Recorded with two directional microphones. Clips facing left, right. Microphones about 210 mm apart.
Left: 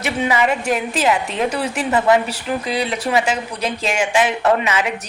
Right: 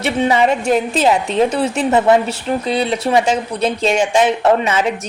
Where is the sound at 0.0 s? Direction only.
35° right (ahead or behind).